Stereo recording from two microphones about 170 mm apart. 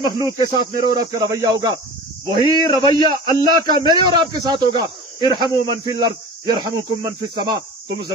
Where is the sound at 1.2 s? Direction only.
20° right (ahead or behind).